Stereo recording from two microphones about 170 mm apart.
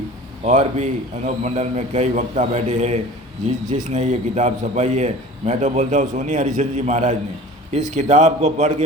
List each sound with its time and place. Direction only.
0.4 s a man's voice: 45° right (ahead or behind)